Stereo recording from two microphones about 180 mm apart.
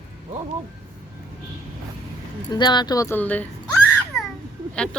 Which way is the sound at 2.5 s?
25° left (ahead or behind).